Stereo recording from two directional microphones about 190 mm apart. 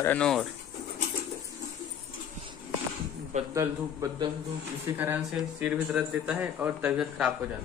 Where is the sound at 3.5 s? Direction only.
15° right (ahead or behind).